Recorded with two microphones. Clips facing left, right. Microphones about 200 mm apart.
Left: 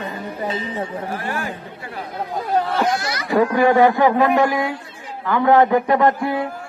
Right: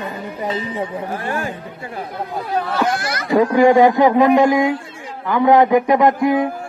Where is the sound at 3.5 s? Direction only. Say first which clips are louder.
Right 4 dB; 15° right (ahead or behind).